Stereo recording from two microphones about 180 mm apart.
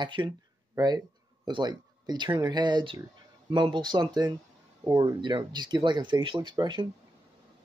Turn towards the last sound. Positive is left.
turn(degrees=-25)  # may be behind; listen again after turning